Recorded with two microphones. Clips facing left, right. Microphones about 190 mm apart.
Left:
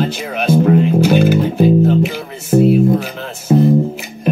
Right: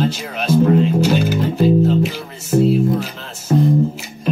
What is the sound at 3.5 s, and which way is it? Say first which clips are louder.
Music: left 4 dB; 10° left (ahead or behind).